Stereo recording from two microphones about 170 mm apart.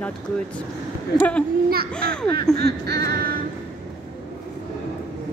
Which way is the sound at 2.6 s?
70° right (ahead or behind).